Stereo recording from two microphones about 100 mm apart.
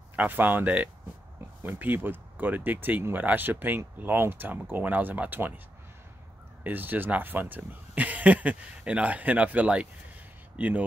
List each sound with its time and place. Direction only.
0.1 s speech: 15° right (ahead or behind)
6.6 s speech: 20° right (ahead or behind)